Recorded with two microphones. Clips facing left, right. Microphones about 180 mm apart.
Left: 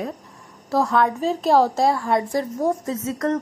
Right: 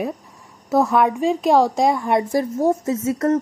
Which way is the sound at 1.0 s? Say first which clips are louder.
Right 3 dB; 10° right (ahead or behind).